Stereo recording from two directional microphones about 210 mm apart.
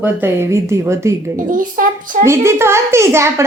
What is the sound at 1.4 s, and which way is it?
Speech, 40° right (ahead or behind).